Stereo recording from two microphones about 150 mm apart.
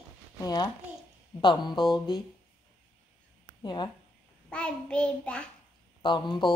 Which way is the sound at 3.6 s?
30° left (ahead or behind).